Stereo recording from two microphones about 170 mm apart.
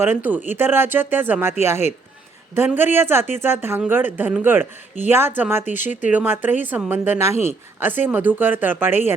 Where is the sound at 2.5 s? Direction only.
10° right (ahead or behind).